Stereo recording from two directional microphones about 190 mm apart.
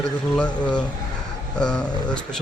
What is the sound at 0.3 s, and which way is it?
Speech, 5° left (ahead or behind).